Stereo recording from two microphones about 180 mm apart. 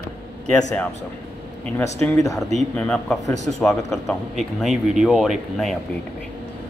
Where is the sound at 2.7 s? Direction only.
5° left (ahead or behind).